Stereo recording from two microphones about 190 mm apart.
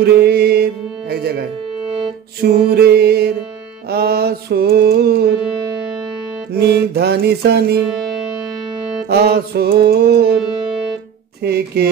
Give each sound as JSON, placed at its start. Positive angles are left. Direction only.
{"t": 0.0, "sound": "mantra", "side_deg": -55}
{"t": 2.4, "sound": "mantra", "side_deg": -55}
{"t": 6.5, "sound": "mantra", "side_deg": -55}
{"t": 9.1, "sound": "mantra", "side_deg": -55}
{"t": 11.4, "sound": "mantra", "side_deg": -55}